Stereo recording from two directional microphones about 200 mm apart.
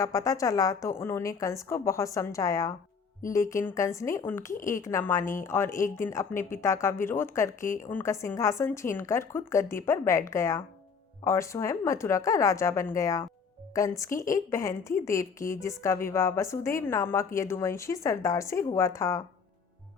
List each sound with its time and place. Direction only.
0.0 s a woman's voice: 15° left (ahead or behind)